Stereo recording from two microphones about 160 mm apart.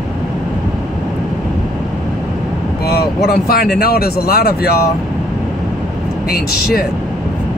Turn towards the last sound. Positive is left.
turn(degrees=75)  # may be behind; listen again after turning